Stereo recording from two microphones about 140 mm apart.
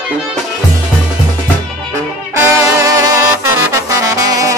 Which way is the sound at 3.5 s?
25° right (ahead or behind).